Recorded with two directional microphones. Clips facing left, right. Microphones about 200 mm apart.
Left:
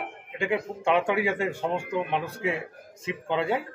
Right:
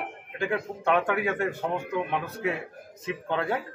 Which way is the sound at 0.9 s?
10° left (ahead or behind).